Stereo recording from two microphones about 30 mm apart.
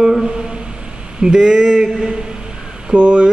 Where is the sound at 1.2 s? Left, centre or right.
Right.